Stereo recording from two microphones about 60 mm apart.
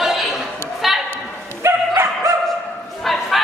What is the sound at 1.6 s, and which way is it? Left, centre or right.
Dog, right.